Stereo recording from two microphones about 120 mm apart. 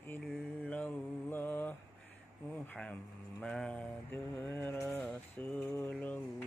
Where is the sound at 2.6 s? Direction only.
10° left (ahead or behind).